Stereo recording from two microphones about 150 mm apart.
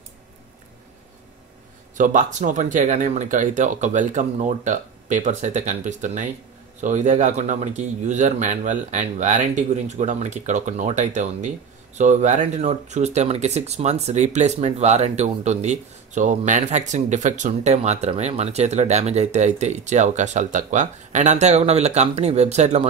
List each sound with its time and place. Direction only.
2.0 s speech: 60° right (ahead or behind)